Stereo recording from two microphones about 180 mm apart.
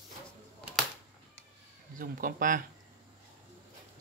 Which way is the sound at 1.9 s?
50° right (ahead or behind).